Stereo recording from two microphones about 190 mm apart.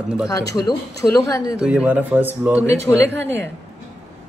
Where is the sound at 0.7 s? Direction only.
15° left (ahead or behind).